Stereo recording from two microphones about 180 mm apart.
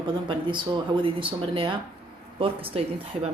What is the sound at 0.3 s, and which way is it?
Speech, 25° right (ahead or behind).